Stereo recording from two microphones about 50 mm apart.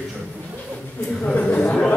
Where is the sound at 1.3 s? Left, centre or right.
Left.